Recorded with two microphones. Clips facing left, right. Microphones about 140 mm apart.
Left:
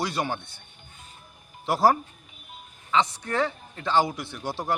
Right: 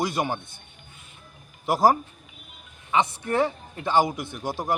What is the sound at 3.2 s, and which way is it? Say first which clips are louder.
Speech: right 3 dB; 20° right (ahead or behind).